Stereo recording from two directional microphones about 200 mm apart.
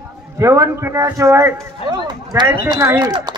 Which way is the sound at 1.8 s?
20° right (ahead or behind).